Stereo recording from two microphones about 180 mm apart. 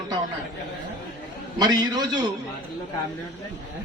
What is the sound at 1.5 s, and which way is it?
Speech, 25° right (ahead or behind).